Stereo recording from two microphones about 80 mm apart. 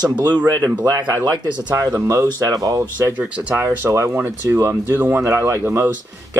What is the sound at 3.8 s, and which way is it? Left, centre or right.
Speech, right.